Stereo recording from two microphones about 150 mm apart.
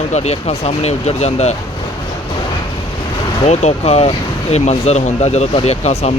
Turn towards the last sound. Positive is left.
turn(degrees=45)  # may be behind; listen again after turning